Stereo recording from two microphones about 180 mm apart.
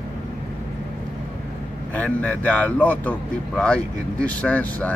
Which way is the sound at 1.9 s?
10° left (ahead or behind).